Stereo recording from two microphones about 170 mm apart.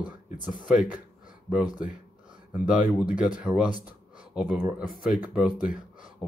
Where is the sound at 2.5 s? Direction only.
10° right (ahead or behind).